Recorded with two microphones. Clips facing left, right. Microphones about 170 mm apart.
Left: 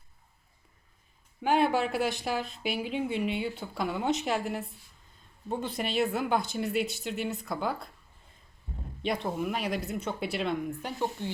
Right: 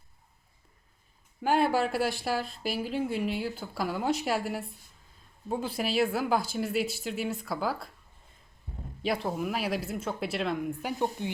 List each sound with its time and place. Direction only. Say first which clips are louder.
1.4 s speech: even; centre (ahead or behind)
9.0 s speech: right 1 dB; 5° right (ahead or behind)
10.9 s speech: right 2 dB; 15° right (ahead or behind)